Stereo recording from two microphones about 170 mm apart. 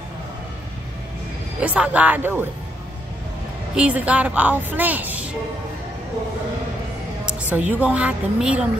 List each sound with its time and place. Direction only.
1.6 s a woman's voice: 10° right (ahead or behind)
3.7 s a woman's voice: 5° right (ahead or behind)
7.2 s a woman's voice: 10° right (ahead or behind)